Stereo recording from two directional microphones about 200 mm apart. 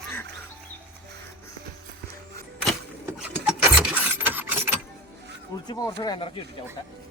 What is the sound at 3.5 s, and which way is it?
Filing, 5° right (ahead or behind).